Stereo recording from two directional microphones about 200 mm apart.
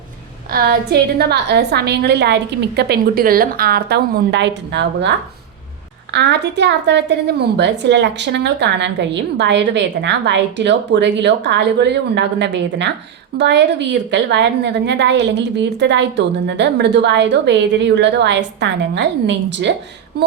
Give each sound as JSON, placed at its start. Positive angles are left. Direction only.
{"t": 0.5, "sound": "a woman's voice", "side_deg": -50}
{"t": 6.1, "sound": "a woman's voice", "side_deg": -60}